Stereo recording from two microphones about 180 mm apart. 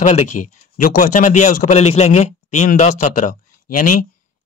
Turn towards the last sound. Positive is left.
turn(degrees=50)  # may be behind; listen again after turning